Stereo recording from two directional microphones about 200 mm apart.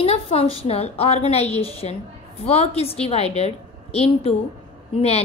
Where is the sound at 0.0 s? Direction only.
30° left (ahead or behind).